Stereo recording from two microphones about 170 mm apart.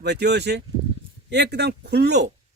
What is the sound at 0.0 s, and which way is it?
Speech, 80° right.